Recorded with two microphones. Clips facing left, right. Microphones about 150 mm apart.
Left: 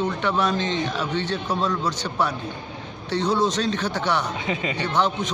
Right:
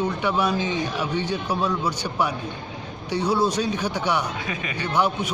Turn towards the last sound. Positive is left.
turn(degrees=-10)  # may be behind; listen again after turning